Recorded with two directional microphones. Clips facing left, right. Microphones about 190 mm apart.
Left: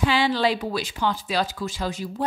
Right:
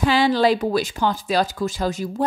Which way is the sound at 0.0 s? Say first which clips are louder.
Right 4 dB; 45° right (ahead or behind).